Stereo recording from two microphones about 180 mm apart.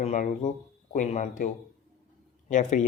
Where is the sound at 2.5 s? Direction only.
40° left (ahead or behind).